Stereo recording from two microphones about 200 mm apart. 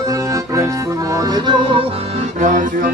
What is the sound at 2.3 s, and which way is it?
Music, 40° right (ahead or behind).